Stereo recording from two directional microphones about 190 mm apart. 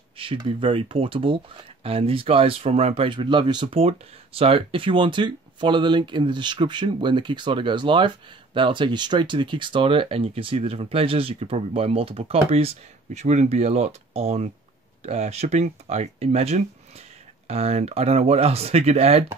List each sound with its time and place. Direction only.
0.2 s speech: 30° right (ahead or behind)